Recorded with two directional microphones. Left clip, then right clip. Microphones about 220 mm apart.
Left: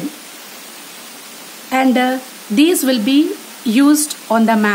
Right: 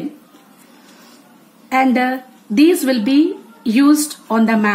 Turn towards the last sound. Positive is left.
turn(degrees=30)  # may be behind; listen again after turning